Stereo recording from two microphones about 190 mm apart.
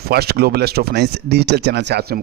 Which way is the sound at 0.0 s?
55° right (ahead or behind).